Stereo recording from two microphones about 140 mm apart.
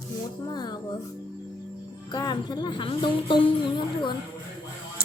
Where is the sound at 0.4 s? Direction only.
30° left (ahead or behind).